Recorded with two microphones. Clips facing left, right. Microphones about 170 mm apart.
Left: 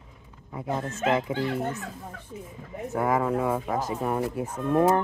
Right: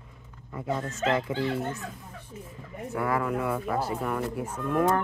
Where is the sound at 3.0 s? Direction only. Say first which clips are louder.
Left 3 dB; 20° left (ahead or behind).